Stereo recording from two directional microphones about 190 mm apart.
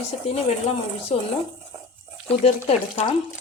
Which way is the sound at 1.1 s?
35° left (ahead or behind).